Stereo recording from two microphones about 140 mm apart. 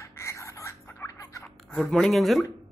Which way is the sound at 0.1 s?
20° left (ahead or behind).